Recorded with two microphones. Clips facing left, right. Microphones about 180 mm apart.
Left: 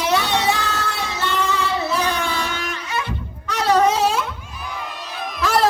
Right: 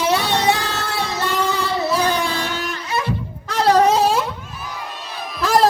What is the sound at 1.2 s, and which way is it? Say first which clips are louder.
Child singing: left 1 dB; 35° right (ahead or behind).